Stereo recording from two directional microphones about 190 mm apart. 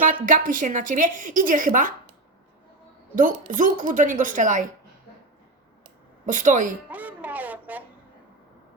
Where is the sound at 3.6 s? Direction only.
45° right (ahead or behind).